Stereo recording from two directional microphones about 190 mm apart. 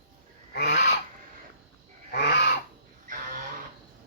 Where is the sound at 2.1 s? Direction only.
60° left (ahead or behind).